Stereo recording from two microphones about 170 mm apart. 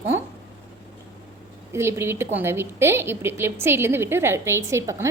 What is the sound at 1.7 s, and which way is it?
A woman's voice, 15° right (ahead or behind).